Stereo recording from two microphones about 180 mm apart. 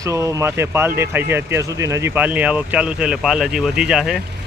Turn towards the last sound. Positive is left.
turn(degrees=0)  # may be behind; listen again after turning